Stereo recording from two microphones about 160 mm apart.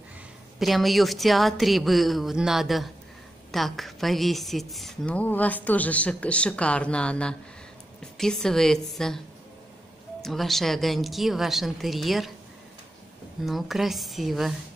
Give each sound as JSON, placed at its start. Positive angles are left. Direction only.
{"t": 0.6, "sound": "a woman's voice", "side_deg": 0}
{"t": 10.2, "sound": "a woman's voice", "side_deg": 0}
{"t": 13.5, "sound": "a woman's voice", "side_deg": 0}